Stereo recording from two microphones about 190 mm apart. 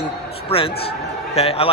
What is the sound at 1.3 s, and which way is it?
Speech, 30° left (ahead or behind).